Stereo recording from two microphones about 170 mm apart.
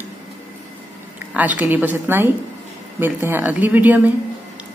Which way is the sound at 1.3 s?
10° right (ahead or behind).